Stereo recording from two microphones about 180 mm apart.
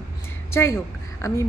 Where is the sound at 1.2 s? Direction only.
15° left (ahead or behind).